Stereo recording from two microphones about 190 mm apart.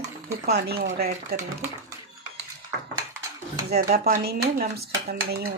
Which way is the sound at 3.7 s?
55° right (ahead or behind).